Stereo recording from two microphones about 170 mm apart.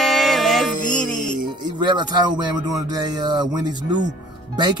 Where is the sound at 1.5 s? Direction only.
25° right (ahead or behind).